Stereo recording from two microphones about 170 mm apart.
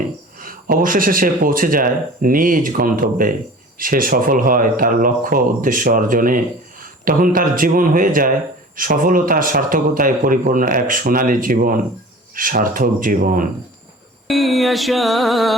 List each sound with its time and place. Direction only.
0.3 s speech: 55° right (ahead or behind)
14.3 s mantra: centre (ahead or behind)